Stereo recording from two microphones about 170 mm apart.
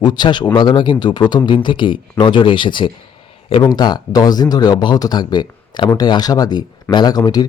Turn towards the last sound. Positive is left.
turn(degrees=25)  # may be behind; listen again after turning